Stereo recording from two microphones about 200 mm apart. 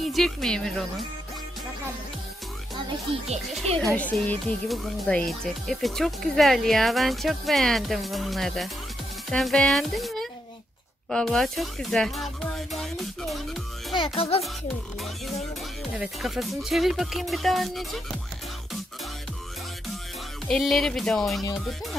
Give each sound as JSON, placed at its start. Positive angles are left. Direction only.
{"t": 0.0, "sound": "speech", "side_deg": 0}
{"t": 3.8, "sound": "speech", "side_deg": 5}
{"t": 13.9, "sound": "a child's voice", "side_deg": 25}
{"t": 16.0, "sound": "speech", "side_deg": 0}
{"t": 20.4, "sound": "speech", "side_deg": 0}